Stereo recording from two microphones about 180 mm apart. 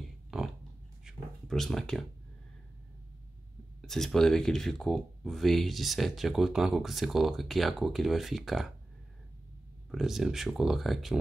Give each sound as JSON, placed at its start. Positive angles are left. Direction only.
{"t": 0.3, "sound": "a sound", "side_deg": -5}
{"t": 3.8, "sound": "speech", "side_deg": 0}
{"t": 9.8, "sound": "speech", "side_deg": 0}